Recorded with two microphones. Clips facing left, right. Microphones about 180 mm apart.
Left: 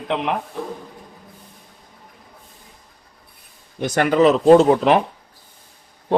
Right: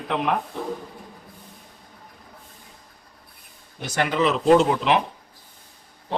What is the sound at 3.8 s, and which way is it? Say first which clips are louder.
Speech: left 7 dB; 45° left (ahead or behind).